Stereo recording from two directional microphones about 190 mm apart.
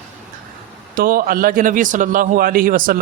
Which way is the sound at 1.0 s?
50° right (ahead or behind).